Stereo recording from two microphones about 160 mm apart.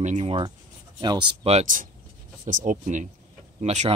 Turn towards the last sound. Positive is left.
turn(degrees=-45)  # may be behind; listen again after turning